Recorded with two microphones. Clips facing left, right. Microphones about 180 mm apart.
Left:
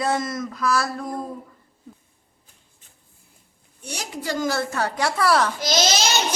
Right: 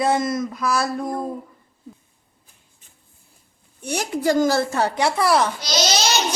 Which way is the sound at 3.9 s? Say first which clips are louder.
Right 8 dB; 50° right (ahead or behind).